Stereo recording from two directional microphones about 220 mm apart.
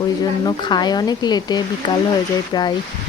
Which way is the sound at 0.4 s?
20° left (ahead or behind).